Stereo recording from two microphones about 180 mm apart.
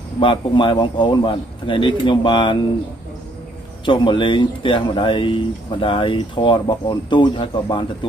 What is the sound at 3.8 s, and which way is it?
Speech, 25° left (ahead or behind).